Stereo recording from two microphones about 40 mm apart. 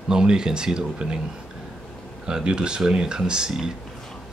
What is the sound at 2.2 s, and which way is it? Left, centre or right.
Speech, right.